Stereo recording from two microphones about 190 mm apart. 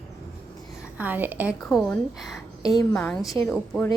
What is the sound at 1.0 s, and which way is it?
Speech, 10° right (ahead or behind).